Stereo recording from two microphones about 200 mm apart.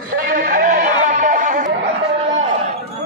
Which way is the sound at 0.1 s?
45° right (ahead or behind).